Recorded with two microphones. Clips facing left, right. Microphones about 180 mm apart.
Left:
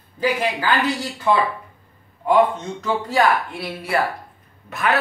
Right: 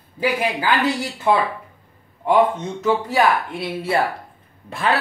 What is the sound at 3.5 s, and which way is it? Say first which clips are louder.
Speech: right 2 dB; 25° right (ahead or behind).